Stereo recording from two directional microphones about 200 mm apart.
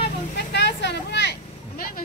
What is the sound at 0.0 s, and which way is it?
Vehicle, 55° left (ahead or behind).